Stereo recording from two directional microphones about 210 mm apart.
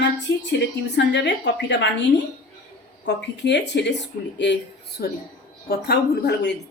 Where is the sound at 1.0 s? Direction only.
55° left (ahead or behind).